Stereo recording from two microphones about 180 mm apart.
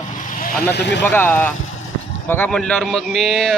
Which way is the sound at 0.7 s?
70° left (ahead or behind).